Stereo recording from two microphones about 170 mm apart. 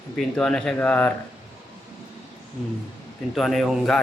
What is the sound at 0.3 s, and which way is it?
Speech, 5° left (ahead or behind).